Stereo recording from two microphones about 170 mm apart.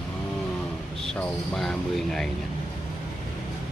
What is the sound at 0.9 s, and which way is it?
Speech, 5° left (ahead or behind).